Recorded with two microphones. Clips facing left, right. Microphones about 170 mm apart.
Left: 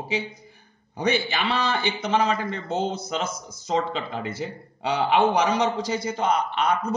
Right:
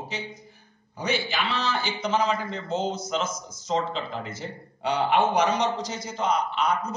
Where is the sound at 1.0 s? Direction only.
65° left (ahead or behind).